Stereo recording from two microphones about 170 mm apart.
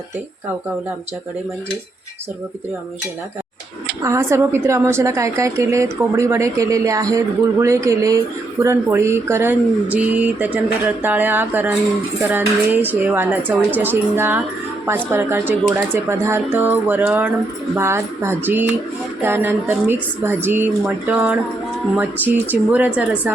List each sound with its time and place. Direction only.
4.0 s a woman's voice: 15° right (ahead or behind)